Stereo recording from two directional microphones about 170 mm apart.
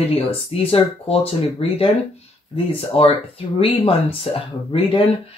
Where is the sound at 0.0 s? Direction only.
35° left (ahead or behind).